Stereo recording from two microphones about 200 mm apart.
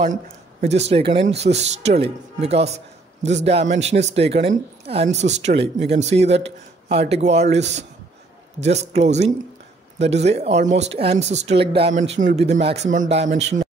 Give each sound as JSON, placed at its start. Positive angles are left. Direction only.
{"t": 0.0, "sound": "a woman's voice", "side_deg": -35}